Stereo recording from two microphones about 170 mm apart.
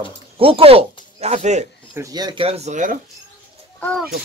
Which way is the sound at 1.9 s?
20° right (ahead or behind).